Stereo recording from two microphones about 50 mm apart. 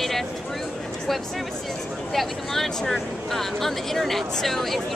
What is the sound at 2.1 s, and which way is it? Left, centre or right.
Speech, centre.